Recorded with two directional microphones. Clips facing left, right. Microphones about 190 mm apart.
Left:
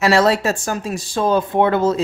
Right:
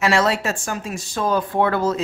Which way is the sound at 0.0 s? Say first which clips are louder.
Left 4 dB; 35° left (ahead or behind).